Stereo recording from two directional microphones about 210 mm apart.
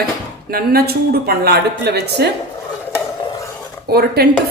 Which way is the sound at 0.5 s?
45° right (ahead or behind).